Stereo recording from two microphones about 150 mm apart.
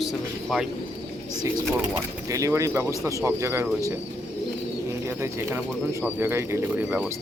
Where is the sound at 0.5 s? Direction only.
5° right (ahead or behind).